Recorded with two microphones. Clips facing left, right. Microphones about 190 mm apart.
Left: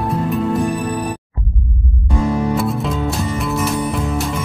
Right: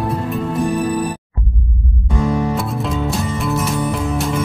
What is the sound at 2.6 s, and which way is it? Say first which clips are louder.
Music: left 2 dB; centre (ahead or behind).